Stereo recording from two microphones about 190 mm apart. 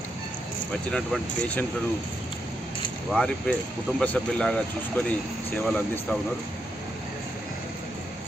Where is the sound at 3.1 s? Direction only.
5° left (ahead or behind).